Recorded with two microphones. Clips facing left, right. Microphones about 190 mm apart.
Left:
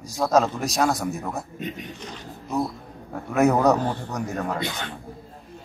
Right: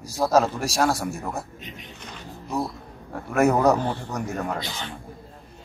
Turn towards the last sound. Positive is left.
turn(degrees=60)  # may be behind; listen again after turning